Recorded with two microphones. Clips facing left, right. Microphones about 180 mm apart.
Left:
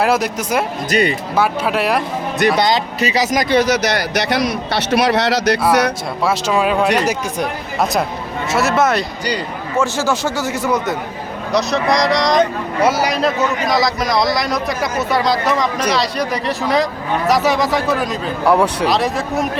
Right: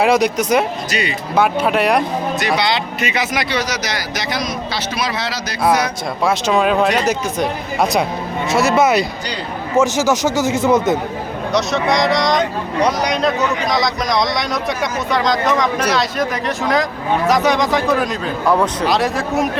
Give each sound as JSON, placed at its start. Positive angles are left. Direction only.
{"t": 0.0, "sound": "speech", "side_deg": 5}
{"t": 2.6, "sound": "speech", "side_deg": 40}
{"t": 3.5, "sound": "a man's voice", "side_deg": 55}
{"t": 6.2, "sound": "speech", "side_deg": 0}
{"t": 7.0, "sound": "speech", "side_deg": 10}
{"t": 8.5, "sound": "speech", "side_deg": 5}
{"t": 9.7, "sound": "a man's voice", "side_deg": -20}
{"t": 11.5, "sound": "speech", "side_deg": 0}